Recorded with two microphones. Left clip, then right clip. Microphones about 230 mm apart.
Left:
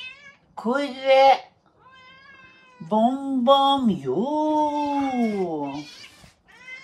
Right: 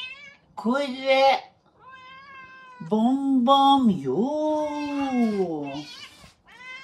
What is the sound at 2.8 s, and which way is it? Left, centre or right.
Male singing, centre.